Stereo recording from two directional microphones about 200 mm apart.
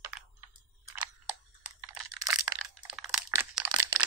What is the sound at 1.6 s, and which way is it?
Computer keyboard, 5° right (ahead or behind).